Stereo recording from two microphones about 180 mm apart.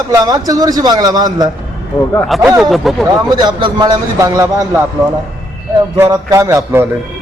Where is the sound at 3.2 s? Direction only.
25° right (ahead or behind).